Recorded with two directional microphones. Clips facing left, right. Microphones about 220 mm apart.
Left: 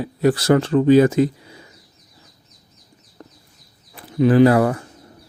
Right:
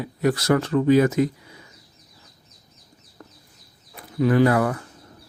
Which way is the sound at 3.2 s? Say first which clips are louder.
Left 3 dB; 20° left (ahead or behind).